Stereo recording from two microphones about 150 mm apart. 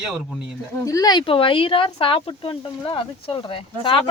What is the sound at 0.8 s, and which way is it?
Speech, 25° left (ahead or behind).